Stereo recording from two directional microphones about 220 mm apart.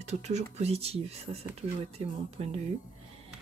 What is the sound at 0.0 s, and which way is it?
Speech, 30° right (ahead or behind).